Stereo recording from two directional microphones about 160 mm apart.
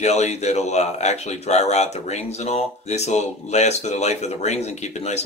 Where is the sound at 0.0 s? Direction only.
45° left (ahead or behind).